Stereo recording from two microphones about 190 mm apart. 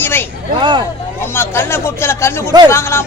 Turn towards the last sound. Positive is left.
turn(degrees=15)  # may be behind; listen again after turning